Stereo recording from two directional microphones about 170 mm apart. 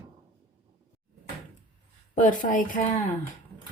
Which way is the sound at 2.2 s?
50° left (ahead or behind).